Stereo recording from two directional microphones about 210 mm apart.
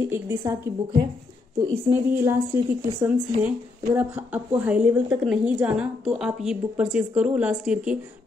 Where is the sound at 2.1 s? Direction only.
10° right (ahead or behind).